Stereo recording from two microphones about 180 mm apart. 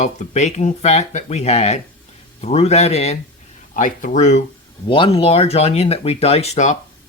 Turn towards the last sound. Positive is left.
turn(degrees=40)  # may be behind; listen again after turning